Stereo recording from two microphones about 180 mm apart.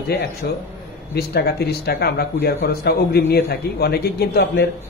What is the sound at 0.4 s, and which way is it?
A man's voice, 60° left (ahead or behind).